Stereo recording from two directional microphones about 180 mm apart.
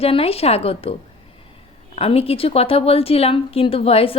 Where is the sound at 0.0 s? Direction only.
35° left (ahead or behind).